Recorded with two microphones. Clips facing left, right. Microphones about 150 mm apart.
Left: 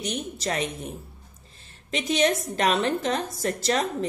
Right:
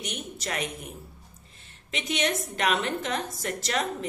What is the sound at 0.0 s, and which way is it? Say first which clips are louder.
A woman's voice: left 6 dB; 35° left (ahead or behind).